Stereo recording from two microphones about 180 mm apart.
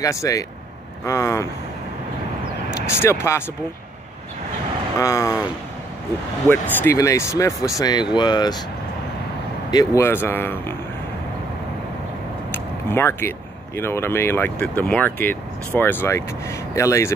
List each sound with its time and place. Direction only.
0.0 s speech: 20° left (ahead or behind)
3.0 s speech: 15° left (ahead or behind)
4.9 s speech: 20° left (ahead or behind)
6.5 s speech: 15° left (ahead or behind)
9.7 s speech: 20° left (ahead or behind)
12.9 s speech: 15° left (ahead or behind)